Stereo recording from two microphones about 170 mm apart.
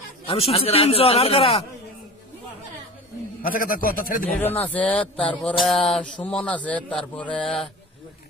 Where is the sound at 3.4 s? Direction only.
55° left (ahead or behind).